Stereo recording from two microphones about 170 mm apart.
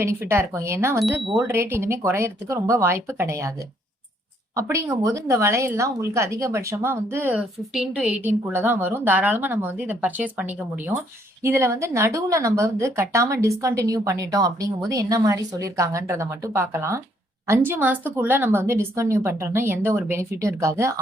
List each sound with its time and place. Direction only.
0.0 s speech: 15° right (ahead or behind)
0.9 s speech: centre (ahead or behind)
1.5 s speech: 15° right (ahead or behind)
4.5 s a woman's voice: 15° right (ahead or behind)